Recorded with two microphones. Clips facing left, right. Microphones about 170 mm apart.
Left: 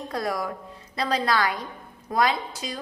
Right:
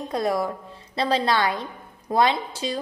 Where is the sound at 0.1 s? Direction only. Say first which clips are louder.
Right 5 dB; 25° right (ahead or behind).